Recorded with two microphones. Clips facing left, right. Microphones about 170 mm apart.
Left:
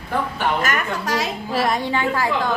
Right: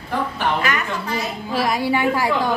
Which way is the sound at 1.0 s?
90° left.